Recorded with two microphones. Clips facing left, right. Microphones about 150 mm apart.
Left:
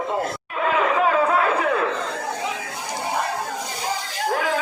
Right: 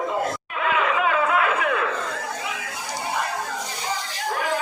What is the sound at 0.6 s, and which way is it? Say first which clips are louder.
Chatter: left 3 dB; 35° left (ahead or behind).